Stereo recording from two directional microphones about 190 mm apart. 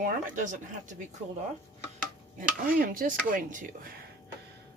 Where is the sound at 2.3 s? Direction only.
45° right (ahead or behind).